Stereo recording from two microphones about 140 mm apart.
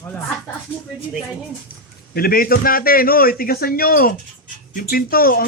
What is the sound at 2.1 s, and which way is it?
A man's voice, 90° left.